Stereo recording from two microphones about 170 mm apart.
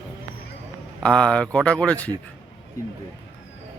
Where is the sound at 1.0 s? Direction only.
5° left (ahead or behind).